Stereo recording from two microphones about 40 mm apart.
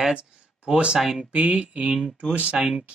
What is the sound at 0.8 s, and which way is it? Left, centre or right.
Speech, centre.